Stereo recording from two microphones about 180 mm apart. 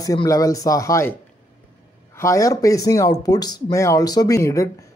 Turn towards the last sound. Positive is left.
turn(degrees=15)  # may be behind; listen again after turning